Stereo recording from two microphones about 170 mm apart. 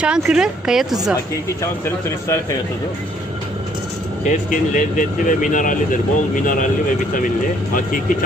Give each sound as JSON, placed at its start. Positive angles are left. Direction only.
{"t": 0.0, "sound": "speech", "side_deg": -5}
{"t": 1.8, "sound": "speech", "side_deg": 15}
{"t": 4.3, "sound": "speech", "side_deg": 50}
{"t": 7.7, "sound": "speech", "side_deg": 55}